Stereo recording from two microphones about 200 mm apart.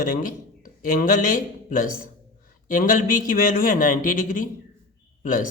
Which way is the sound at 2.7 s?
45° left (ahead or behind).